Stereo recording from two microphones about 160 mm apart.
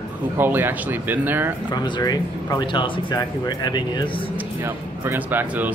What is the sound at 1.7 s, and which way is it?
Speech, 25° left (ahead or behind).